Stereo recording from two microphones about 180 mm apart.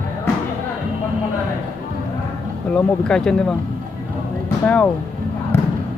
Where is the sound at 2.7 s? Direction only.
5° left (ahead or behind).